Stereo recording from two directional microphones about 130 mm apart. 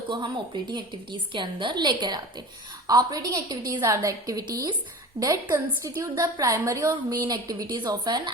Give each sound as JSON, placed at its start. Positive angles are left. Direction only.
{"t": 0.7, "sound": "a woman's voice", "side_deg": -40}